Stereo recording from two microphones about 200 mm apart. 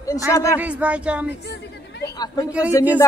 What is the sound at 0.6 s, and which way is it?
Speech, 5° right (ahead or behind).